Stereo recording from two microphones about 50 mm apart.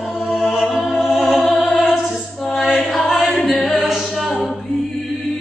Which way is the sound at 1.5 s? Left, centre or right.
Left.